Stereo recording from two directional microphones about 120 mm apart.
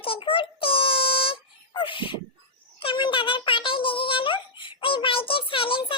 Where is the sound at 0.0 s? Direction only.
50° left (ahead or behind).